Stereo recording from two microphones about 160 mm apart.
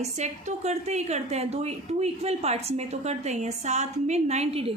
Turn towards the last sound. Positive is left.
turn(degrees=-40)  # may be behind; listen again after turning